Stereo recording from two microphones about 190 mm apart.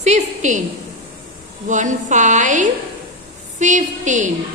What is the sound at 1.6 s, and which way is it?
A woman's voice, 40° right (ahead or behind).